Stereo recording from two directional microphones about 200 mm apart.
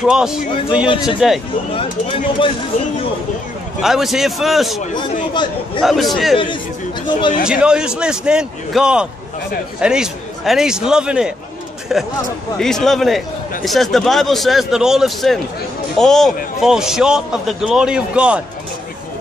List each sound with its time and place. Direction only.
0.0 s a man's voice: 5° right (ahead or behind)
1.8 s speech: 25° left (ahead or behind)
3.8 s a man's voice: centre (ahead or behind)
5.8 s a man's voice: centre (ahead or behind)
6.3 s speech: 25° left (ahead or behind)
7.4 s a man's voice: 5° right (ahead or behind)